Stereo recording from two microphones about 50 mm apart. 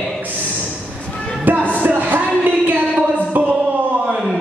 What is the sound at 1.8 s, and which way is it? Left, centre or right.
Music, right.